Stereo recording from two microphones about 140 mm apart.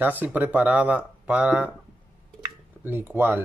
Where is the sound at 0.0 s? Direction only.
15° right (ahead or behind).